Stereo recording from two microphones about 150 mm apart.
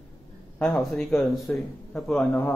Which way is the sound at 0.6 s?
5° left (ahead or behind).